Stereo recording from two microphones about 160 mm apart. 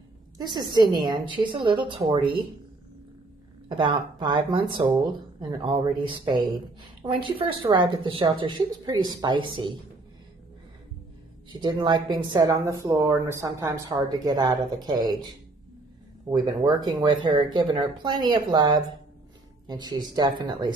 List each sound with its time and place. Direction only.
0.4 s a woman's voice: 25° right (ahead or behind)
3.6 s speech: 30° right (ahead or behind)
11.5 s a woman's voice: 30° right (ahead or behind)
16.3 s a woman's voice: 25° right (ahead or behind)